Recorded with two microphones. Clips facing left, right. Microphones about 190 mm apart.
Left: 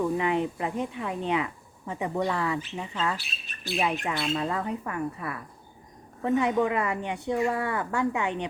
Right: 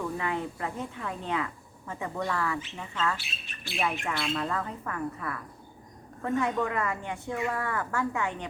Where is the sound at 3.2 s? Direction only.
40° left (ahead or behind).